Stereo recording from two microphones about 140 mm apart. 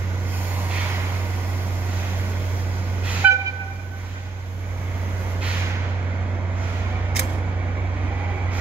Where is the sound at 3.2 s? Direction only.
10° right (ahead or behind).